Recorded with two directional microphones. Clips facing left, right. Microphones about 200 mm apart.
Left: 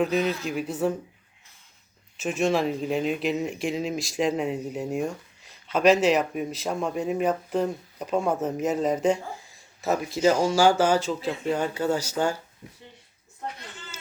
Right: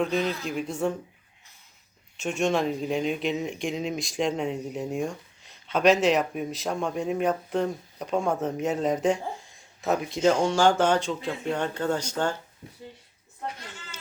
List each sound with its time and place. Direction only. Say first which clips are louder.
0.0 s speech: left 2 dB; 5° left (ahead or behind)
2.1 s speech: left 1 dB; centre (ahead or behind)